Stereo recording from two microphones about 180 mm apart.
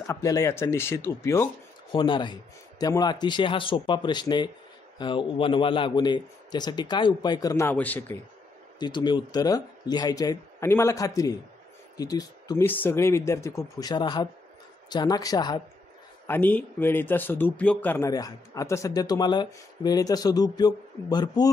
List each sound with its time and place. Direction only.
0.0 s speech: 15° left (ahead or behind)
1.9 s speech: 25° left (ahead or behind); by 8.2 s 10° left (ahead or behind)
8.7 s speech: 25° left (ahead or behind)
16.3 s speech: 10° left (ahead or behind)